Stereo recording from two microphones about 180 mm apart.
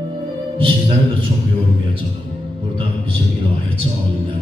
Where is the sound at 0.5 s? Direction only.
30° right (ahead or behind).